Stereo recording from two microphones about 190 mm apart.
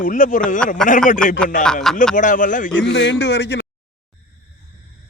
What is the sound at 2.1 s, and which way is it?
Speech, 45° left (ahead or behind).